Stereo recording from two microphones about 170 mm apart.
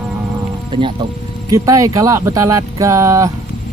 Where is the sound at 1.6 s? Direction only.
20° right (ahead or behind).